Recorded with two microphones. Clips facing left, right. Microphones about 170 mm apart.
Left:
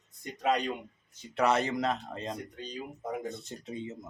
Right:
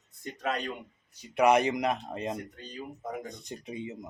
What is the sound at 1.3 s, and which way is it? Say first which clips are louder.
Speech: right 4 dB; 15° right (ahead or behind).